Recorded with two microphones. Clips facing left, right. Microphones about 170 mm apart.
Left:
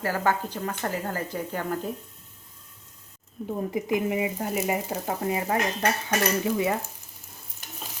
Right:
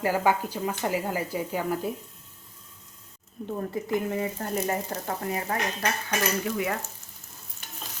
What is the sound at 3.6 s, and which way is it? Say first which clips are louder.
Speech: left 2 dB; 15° left (ahead or behind).